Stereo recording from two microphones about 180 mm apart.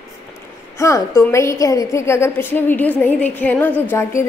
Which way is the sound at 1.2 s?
15° left (ahead or behind).